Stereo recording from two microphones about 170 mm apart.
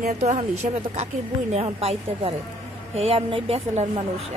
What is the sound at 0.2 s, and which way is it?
Speech, 40° right (ahead or behind).